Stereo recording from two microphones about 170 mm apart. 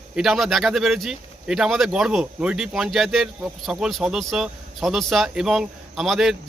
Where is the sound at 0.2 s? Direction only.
Centre (ahead or behind).